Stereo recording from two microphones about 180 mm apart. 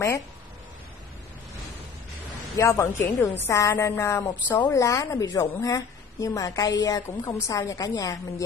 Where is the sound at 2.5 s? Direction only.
15° left (ahead or behind).